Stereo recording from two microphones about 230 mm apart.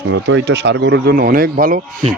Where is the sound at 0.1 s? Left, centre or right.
Right.